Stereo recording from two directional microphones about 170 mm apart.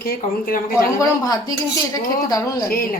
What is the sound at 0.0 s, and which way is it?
Speech, 60° left (ahead or behind).